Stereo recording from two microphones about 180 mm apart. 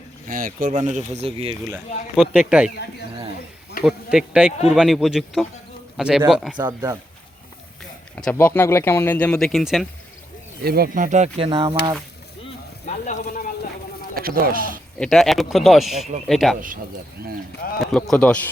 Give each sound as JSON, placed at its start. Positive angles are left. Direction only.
{"t": 0.3, "sound": "speech", "side_deg": -50}
{"t": 2.1, "sound": "speech", "side_deg": 0}
{"t": 3.8, "sound": "speech", "side_deg": -5}
{"t": 6.6, "sound": "speech", "side_deg": -20}
{"t": 8.1, "sound": "speech", "side_deg": 10}
{"t": 10.6, "sound": "speech", "side_deg": -60}
{"t": 12.8, "sound": "a sound", "side_deg": 40}
{"t": 14.2, "sound": "speech", "side_deg": -55}
{"t": 14.9, "sound": "speech", "side_deg": 5}
{"t": 17.7, "sound": "speech", "side_deg": 0}